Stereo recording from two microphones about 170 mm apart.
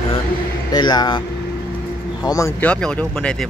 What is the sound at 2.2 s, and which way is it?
Speech, 20° left (ahead or behind).